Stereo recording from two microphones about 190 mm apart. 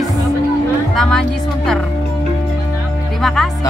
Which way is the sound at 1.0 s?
Centre (ahead or behind).